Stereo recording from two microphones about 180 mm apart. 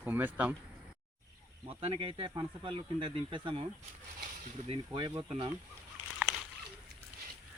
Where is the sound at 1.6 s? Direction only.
30° right (ahead or behind).